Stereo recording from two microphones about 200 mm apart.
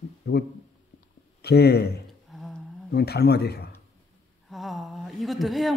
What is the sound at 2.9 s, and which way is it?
Speech, 50° left (ahead or behind).